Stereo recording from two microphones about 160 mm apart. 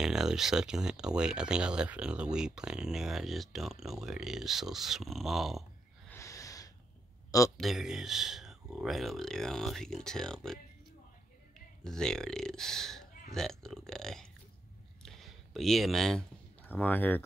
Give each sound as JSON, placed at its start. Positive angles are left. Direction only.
{"t": 0.0, "sound": "speech", "side_deg": -5}
{"t": 6.0, "sound": "snort", "side_deg": 20}
{"t": 7.2, "sound": "a man's voice", "side_deg": 20}
{"t": 7.5, "sound": "speech", "side_deg": 0}
{"t": 11.8, "sound": "speech", "side_deg": 5}
{"t": 15.0, "sound": "a sound", "side_deg": 0}
{"t": 16.6, "sound": "speech", "side_deg": 10}